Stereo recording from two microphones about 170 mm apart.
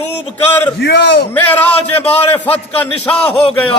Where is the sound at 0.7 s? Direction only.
80° left.